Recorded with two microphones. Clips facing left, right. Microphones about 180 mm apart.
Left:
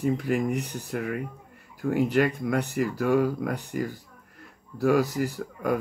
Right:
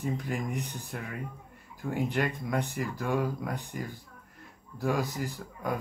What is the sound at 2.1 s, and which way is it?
Speech, 70° left (ahead or behind).